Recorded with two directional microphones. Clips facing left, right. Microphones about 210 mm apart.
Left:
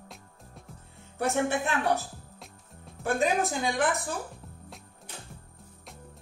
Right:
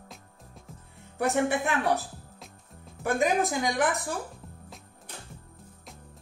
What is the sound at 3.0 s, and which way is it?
Speech, 15° right (ahead or behind).